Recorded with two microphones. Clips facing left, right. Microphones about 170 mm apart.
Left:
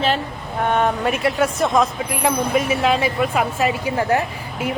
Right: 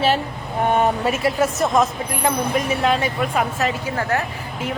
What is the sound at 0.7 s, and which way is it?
A woman's voice, 10° right (ahead or behind).